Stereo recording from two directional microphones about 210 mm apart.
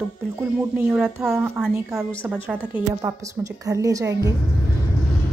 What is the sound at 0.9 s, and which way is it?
A woman's voice, 5° right (ahead or behind).